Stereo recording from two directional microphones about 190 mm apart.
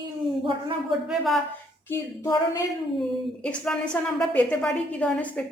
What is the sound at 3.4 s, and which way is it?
A woman's voice, 5° left (ahead or behind).